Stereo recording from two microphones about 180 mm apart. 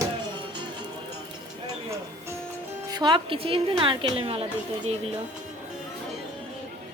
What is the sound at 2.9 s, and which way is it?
A woman's voice, 25° right (ahead or behind).